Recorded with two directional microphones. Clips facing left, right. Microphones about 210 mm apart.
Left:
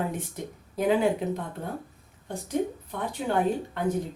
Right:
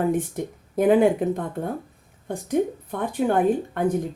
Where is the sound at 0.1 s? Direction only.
50° right (ahead or behind).